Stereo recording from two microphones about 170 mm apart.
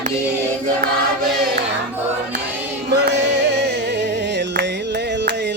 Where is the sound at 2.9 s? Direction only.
80° right.